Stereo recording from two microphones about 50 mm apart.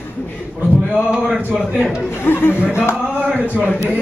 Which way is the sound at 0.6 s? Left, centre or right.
Centre.